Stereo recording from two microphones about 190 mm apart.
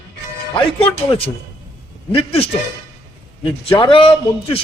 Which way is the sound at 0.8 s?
30° left (ahead or behind).